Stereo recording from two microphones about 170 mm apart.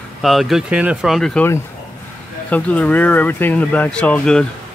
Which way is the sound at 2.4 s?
10° left (ahead or behind).